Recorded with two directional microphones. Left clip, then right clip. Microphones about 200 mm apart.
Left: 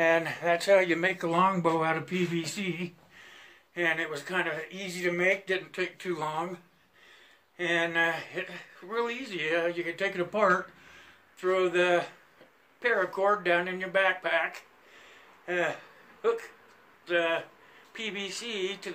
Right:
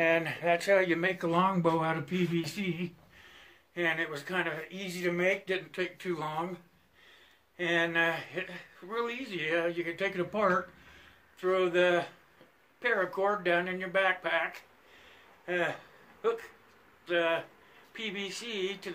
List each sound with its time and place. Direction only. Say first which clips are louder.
0.0 s speech: left 2 dB; 5° left (ahead or behind)
7.5 s speech: left 1 dB; centre (ahead or behind)
15.4 s a sound: left 2 dB; 5° right (ahead or behind)
17.0 s speech: left 1 dB; centre (ahead or behind)